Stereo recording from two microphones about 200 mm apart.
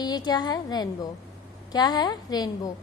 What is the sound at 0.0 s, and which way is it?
A woman's voice, 20° left (ahead or behind).